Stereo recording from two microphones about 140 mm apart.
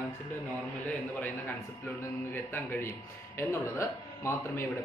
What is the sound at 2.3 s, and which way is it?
Speech, 15° left (ahead or behind).